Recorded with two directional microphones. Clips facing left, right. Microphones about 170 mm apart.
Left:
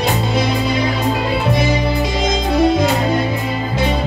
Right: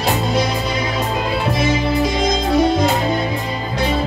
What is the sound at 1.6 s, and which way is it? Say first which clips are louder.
Music: even; centre (ahead or behind).